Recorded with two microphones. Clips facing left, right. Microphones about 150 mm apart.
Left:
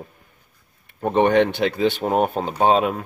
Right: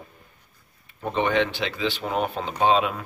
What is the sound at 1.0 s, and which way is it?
Speech, 55° left (ahead or behind).